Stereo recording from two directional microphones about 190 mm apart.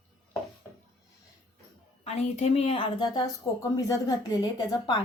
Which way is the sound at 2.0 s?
35° left (ahead or behind).